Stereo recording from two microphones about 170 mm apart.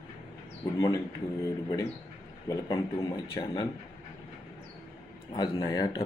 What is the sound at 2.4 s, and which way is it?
Speech, 20° left (ahead or behind).